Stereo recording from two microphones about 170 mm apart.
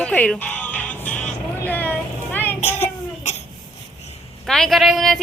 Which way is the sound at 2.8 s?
40° left (ahead or behind).